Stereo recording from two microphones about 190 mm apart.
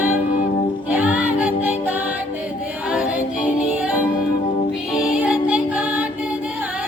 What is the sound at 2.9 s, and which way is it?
A capella, 5° right (ahead or behind).